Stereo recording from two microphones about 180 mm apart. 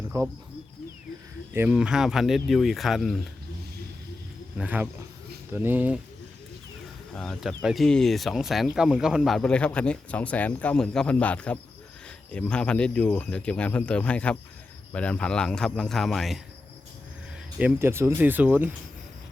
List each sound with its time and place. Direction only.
0.1 s speech: 15° right (ahead or behind)
1.5 s speech: 5° right (ahead or behind)
4.5 s speech: 10° right (ahead or behind)
7.2 s speech: centre (ahead or behind)
17.6 s speech: 15° right (ahead or behind)